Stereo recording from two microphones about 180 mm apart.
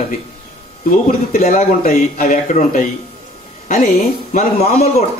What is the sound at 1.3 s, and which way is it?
A man's voice, 40° left (ahead or behind).